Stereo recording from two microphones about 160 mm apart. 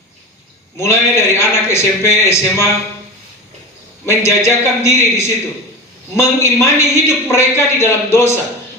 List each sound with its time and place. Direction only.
0.8 s a man's voice: 15° left (ahead or behind)
4.0 s a man's voice: 15° left (ahead or behind)